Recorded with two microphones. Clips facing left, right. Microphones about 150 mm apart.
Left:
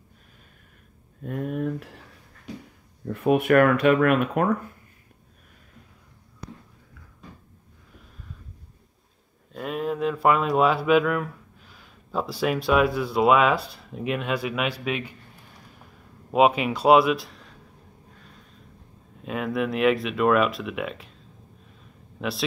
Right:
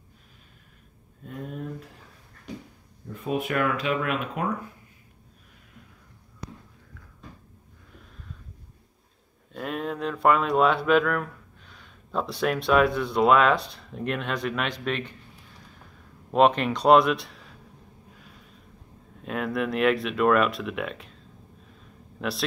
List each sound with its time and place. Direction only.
1.2 s a sound: 60° left (ahead or behind)
3.1 s speech: 65° left (ahead or behind)
9.5 s speech: centre (ahead or behind)
16.3 s speech: 5° left (ahead or behind)
19.2 s speech: centre (ahead or behind)
22.2 s speech: centre (ahead or behind)